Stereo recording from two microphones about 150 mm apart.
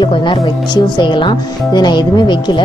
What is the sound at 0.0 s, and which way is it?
A woman's voice, 35° left (ahead or behind).